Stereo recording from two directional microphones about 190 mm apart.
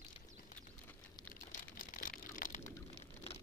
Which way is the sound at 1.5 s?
45° left (ahead or behind).